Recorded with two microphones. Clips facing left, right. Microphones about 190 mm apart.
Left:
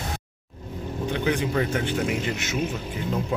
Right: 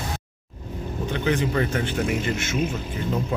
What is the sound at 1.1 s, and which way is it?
Vehicle, 15° left (ahead or behind).